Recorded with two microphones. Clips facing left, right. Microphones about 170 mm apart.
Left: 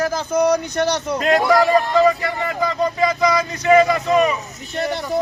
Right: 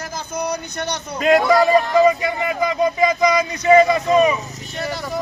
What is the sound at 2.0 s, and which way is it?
Speech, 15° right (ahead or behind).